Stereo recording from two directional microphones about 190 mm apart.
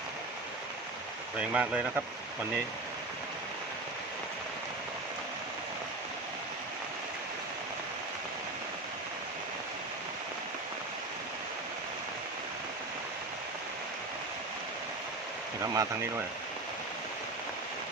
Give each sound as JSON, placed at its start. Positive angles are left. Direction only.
{"t": 1.4, "sound": "speech", "side_deg": -5}
{"t": 15.6, "sound": "speech", "side_deg": -15}